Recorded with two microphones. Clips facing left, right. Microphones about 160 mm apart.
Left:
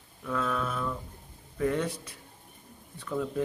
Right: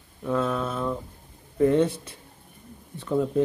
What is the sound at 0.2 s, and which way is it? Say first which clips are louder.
Speech: right 5 dB; 30° right (ahead or behind).